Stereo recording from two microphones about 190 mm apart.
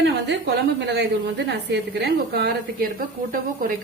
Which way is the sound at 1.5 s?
60° right (ahead or behind).